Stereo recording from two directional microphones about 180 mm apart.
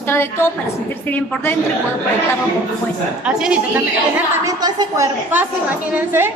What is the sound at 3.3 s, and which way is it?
Speech, 5° right (ahead or behind).